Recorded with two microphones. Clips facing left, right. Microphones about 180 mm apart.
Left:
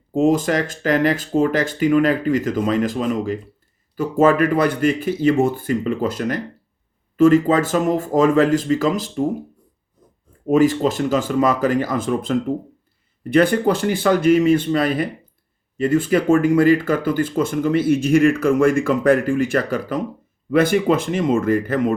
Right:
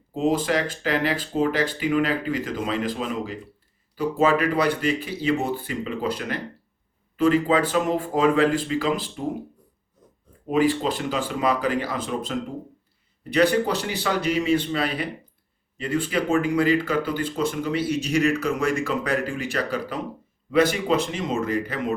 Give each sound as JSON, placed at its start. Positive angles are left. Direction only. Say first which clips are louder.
{"t": 0.1, "sound": "speech", "louder": "left 5 dB", "side_deg": 45}
{"t": 10.4, "sound": "speech", "louder": "left 6 dB", "side_deg": 45}